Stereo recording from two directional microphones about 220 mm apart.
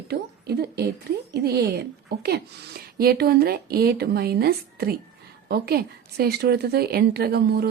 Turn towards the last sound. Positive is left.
turn(degrees=-45)  # may be behind; listen again after turning